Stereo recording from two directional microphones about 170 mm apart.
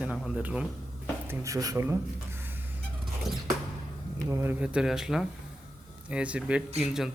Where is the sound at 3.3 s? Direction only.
Centre (ahead or behind).